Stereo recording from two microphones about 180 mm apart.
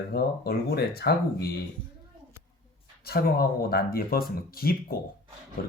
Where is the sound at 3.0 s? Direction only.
60° left (ahead or behind).